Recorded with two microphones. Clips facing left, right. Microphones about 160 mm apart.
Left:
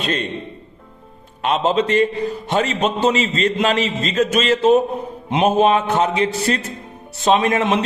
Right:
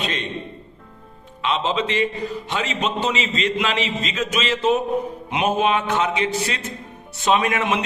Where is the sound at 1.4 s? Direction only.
45° left (ahead or behind).